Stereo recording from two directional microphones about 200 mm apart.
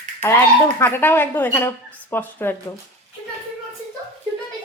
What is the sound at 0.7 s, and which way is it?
A woman's voice, 10° left (ahead or behind).